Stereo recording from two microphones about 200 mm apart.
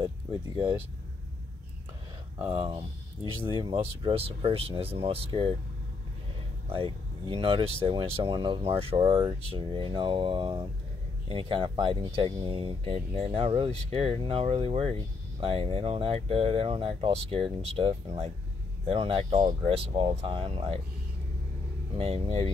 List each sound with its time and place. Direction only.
2.4 s speech: 30° right (ahead or behind)
6.7 s speech: 25° right (ahead or behind)
21.9 s speech: 30° right (ahead or behind)